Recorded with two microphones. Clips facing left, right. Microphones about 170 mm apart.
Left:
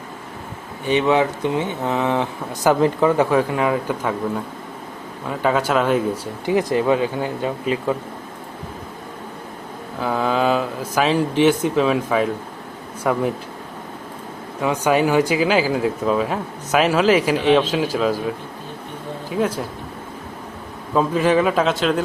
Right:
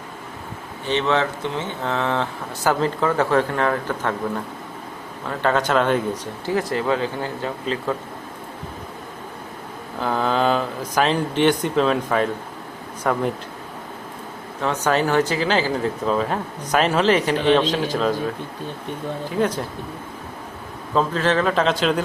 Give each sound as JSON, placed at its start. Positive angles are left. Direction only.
{"t": 0.9, "sound": "speech", "side_deg": 10}
{"t": 5.3, "sound": "speech", "side_deg": 5}
{"t": 6.4, "sound": "speech", "side_deg": 15}
{"t": 10.0, "sound": "speech", "side_deg": 5}
{"t": 14.6, "sound": "speech", "side_deg": 10}
{"t": 19.3, "sound": "speech", "side_deg": 5}
{"t": 20.9, "sound": "speech", "side_deg": 10}